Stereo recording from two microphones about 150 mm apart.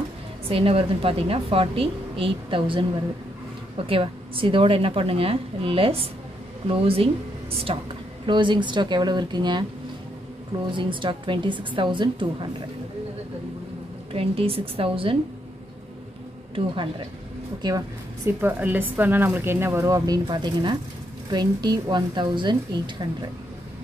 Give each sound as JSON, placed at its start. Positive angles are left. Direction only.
{"t": 0.5, "sound": "a woman's voice", "side_deg": -40}
{"t": 10.7, "sound": "a woman's voice", "side_deg": -35}
{"t": 14.1, "sound": "a woman's voice", "side_deg": -40}
{"t": 16.5, "sound": "a woman's voice", "side_deg": -35}
{"t": 17.6, "sound": "a woman's voice", "side_deg": -25}